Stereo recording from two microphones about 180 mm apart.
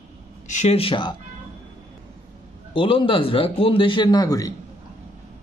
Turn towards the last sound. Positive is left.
turn(degrees=20)  # may be behind; listen again after turning